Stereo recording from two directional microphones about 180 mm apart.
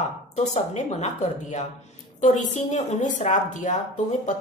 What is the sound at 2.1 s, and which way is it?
A woman's voice, 40° left (ahead or behind).